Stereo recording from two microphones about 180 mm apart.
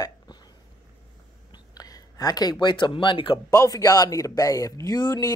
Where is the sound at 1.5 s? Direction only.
20° left (ahead or behind).